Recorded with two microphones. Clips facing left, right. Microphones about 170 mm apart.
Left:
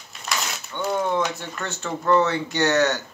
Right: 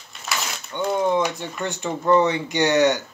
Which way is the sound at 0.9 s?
15° right (ahead or behind).